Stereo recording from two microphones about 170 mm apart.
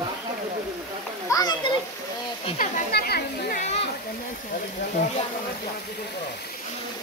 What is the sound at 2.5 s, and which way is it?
Speech, 55° left (ahead or behind).